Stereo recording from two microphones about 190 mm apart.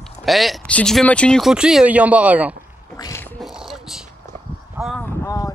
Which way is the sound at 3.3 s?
Centre (ahead or behind).